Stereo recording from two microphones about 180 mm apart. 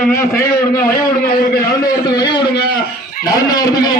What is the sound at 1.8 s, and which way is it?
A man's voice, 20° left (ahead or behind).